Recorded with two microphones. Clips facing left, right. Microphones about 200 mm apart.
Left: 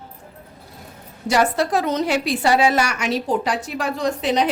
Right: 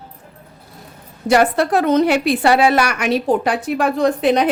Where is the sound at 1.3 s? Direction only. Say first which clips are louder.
Right 4 dB; 60° right (ahead or behind).